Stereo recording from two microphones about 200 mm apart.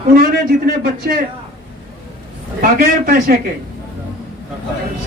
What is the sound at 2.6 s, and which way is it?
Speech, 45° right (ahead or behind).